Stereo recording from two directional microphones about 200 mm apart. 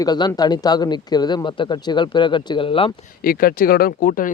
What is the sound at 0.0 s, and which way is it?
Speech, 20° left (ahead or behind).